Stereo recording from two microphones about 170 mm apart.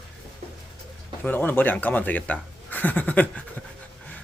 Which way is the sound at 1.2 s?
10° left (ahead or behind).